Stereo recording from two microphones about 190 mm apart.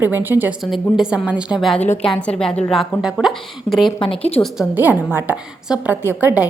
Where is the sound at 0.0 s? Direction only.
10° right (ahead or behind).